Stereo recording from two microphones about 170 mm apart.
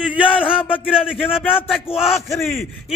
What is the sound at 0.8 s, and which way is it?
Speech, 5° right (ahead or behind).